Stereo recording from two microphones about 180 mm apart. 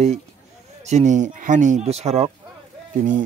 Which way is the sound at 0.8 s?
40° right (ahead or behind).